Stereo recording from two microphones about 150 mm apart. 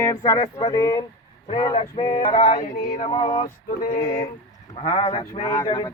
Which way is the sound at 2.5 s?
65° left (ahead or behind).